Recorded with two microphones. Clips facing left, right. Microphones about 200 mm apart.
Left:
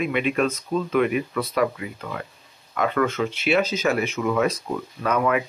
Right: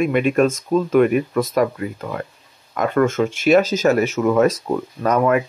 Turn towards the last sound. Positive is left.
turn(degrees=-45)  # may be behind; listen again after turning